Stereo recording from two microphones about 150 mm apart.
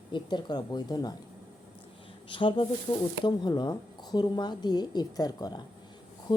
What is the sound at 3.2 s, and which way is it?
Speech, 30° left (ahead or behind).